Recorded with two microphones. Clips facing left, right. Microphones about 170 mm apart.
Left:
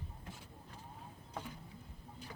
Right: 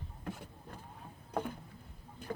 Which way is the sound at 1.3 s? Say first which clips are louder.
Right 10 dB; 55° right (ahead or behind).